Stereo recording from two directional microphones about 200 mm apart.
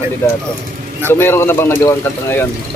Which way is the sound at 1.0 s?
10° left (ahead or behind).